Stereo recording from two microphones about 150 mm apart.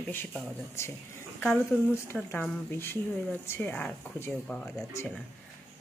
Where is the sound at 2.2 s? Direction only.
10° left (ahead or behind).